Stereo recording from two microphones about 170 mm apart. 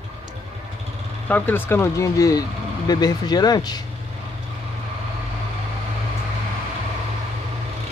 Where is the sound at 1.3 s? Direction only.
10° left (ahead or behind).